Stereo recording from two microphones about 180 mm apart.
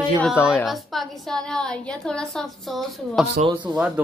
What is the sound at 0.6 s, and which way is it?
Child singing, centre (ahead or behind).